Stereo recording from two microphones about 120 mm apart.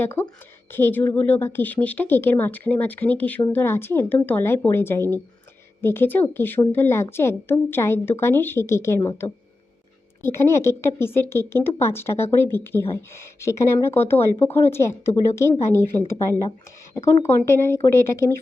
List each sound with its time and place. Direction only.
0.0 s a woman's voice: 15° left (ahead or behind)